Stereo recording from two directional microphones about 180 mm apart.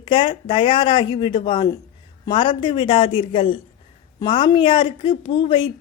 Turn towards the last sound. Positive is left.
turn(degrees=25)  # may be behind; listen again after turning